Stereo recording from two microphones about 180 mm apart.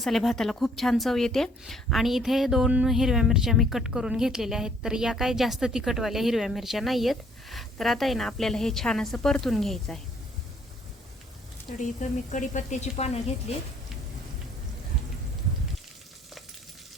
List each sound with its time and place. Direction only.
0.0 s a woman's voice: centre (ahead or behind)
11.8 s speech: 45° left (ahead or behind)